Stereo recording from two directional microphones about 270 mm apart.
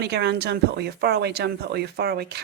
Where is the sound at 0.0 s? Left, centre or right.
Right.